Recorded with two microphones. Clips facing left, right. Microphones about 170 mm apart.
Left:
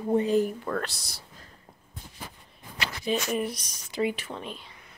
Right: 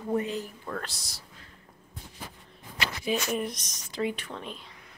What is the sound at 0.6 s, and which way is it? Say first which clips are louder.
Speech: left 5 dB; 70° left (ahead or behind).